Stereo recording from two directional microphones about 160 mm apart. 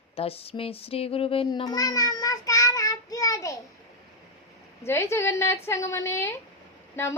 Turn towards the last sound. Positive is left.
turn(degrees=15)  # may be behind; listen again after turning